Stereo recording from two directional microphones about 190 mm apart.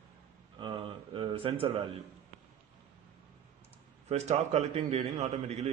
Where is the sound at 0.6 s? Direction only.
25° right (ahead or behind).